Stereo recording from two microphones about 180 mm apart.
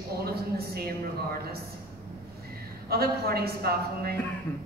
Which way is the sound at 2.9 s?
60° right (ahead or behind).